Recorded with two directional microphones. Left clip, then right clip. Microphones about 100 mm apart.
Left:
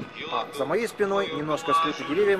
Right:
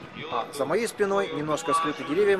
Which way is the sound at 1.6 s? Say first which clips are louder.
Left 4 dB; 40° left (ahead or behind).